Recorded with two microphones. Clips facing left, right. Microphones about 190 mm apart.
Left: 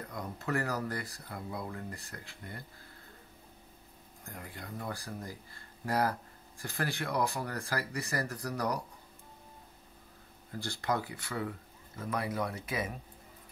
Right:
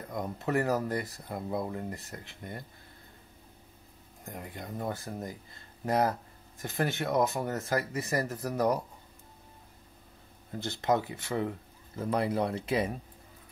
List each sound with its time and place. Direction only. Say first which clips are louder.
0.1 s speech: right 5 dB; 20° right (ahead or behind)
4.3 s speech: right 4 dB; 20° right (ahead or behind)
10.6 s speech: right 5 dB; 20° right (ahead or behind)